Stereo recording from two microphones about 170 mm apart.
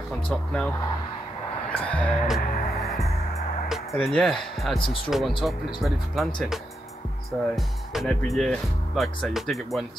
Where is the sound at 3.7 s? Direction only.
Centre (ahead or behind).